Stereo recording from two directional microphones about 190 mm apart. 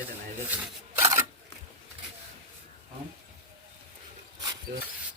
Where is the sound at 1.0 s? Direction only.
15° right (ahead or behind).